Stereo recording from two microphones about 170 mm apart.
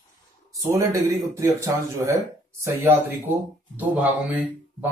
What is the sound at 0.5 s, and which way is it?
Speech, 20° right (ahead or behind).